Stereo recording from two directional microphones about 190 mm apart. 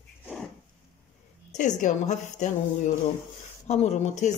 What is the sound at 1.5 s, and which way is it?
Speech, 40° left (ahead or behind).